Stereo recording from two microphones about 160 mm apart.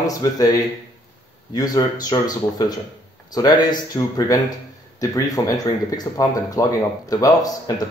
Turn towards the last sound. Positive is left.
turn(degrees=25)  # may be behind; listen again after turning